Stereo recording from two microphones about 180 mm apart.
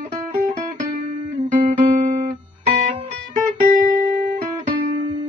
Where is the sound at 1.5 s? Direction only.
45° right (ahead or behind).